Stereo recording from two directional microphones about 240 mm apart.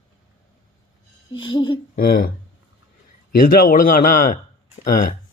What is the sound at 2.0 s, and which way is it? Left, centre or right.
Speech, left.